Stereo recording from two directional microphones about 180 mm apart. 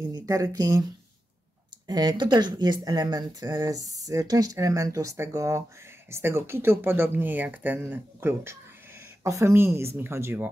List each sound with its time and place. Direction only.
0.1 s speech: 20° right (ahead or behind)
1.9 s speech: 25° right (ahead or behind)